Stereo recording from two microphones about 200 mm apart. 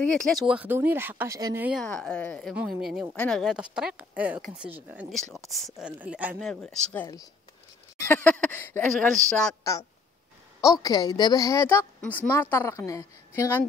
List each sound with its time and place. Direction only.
0.0 s speech: 5° left (ahead or behind)
1.8 s speech: 5° left (ahead or behind)
6.5 s a woman's voice: 5° left (ahead or behind)